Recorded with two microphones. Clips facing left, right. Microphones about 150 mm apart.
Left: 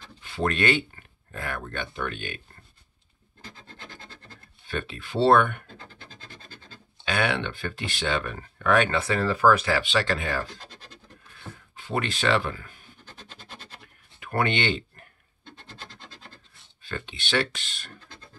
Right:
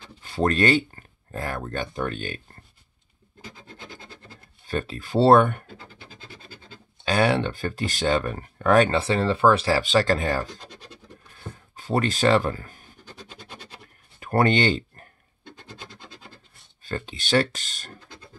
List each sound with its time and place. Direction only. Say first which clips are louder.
0.2 s speech: right 4 dB; 40° right (ahead or behind)
3.6 s rub: right 3 dB; 10° right (ahead or behind)
4.6 s speech: right 4 dB; 40° right (ahead or behind)
5.8 s a sound: right 1 dB; 10° right (ahead or behind)
7.1 s speech: right 5 dB; 35° right (ahead or behind)
11.3 s a sound: right 2 dB; 40° right (ahead or behind)
14.2 s speech: right 5 dB; 40° right (ahead or behind)
15.4 s scratch: right 2 dB; 10° right (ahead or behind)
16.8 s speech: right 4 dB; 40° right (ahead or behind)